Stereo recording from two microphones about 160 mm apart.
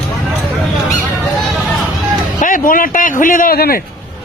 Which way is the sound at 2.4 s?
55° left (ahead or behind).